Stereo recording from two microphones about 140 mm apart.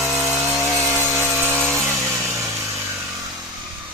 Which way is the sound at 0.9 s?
15° right (ahead or behind).